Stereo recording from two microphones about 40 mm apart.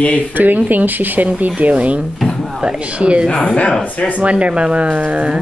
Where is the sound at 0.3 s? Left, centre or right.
Right.